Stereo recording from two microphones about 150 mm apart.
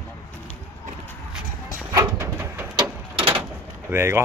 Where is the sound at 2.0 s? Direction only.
15° right (ahead or behind).